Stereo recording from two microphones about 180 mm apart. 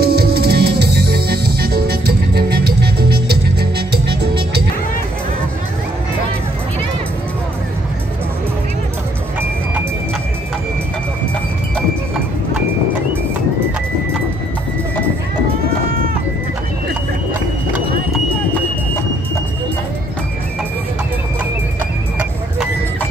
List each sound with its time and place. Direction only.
0.0 s music: 60° right (ahead or behind)